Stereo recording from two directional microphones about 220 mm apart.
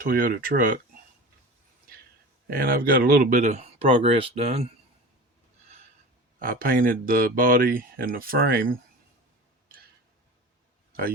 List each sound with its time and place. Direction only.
0.1 s speech: 45° right (ahead or behind)
2.5 s speech: 40° right (ahead or behind)
6.4 s speech: 40° right (ahead or behind)